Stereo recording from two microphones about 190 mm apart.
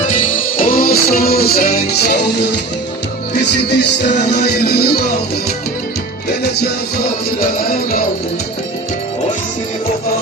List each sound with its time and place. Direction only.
0.1 s music: 45° left (ahead or behind)
6.4 s music: 55° left (ahead or behind)